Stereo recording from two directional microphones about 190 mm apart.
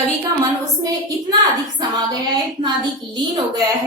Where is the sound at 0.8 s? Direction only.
20° right (ahead or behind).